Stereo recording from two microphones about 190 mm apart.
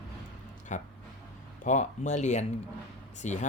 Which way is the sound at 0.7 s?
40° left (ahead or behind).